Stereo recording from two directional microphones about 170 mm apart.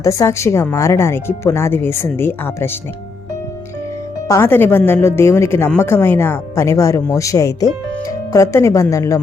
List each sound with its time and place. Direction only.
0.0 s a woman's voice: 20° left (ahead or behind)
4.3 s a woman's voice: 15° left (ahead or behind)